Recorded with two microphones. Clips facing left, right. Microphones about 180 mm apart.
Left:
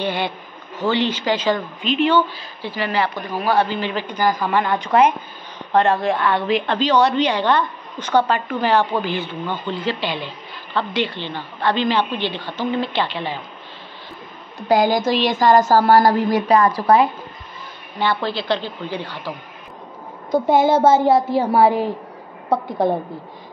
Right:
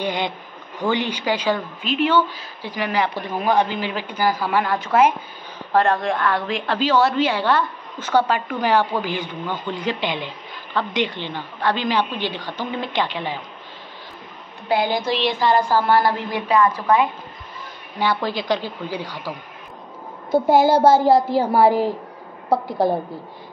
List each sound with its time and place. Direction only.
0.0 s a woman's voice: 15° right (ahead or behind)
14.7 s a sound: 45° left (ahead or behind)
15.7 s a woman's voice: 40° left (ahead or behind)
17.9 s a woman's voice: 10° right (ahead or behind)
22.5 s a woman's voice: 5° right (ahead or behind)